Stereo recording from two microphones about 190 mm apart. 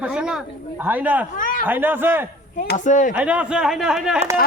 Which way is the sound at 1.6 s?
10° right (ahead or behind).